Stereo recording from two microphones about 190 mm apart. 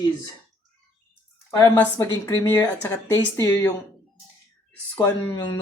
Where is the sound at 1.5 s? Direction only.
10° left (ahead or behind).